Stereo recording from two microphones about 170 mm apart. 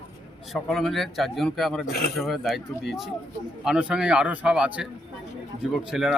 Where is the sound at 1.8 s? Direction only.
65° left (ahead or behind).